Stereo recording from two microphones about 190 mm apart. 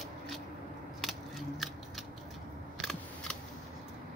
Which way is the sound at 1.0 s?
Centre (ahead or behind).